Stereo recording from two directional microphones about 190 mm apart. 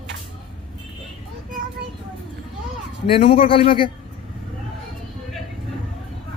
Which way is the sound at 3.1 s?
30° left (ahead or behind).